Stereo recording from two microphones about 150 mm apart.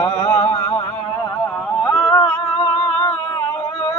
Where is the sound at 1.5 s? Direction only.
10° left (ahead or behind).